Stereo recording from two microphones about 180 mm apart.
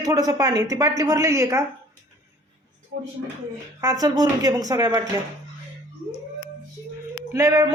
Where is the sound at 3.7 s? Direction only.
20° right (ahead or behind).